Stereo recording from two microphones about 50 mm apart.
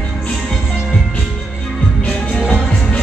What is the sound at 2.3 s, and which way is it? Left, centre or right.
Music, centre.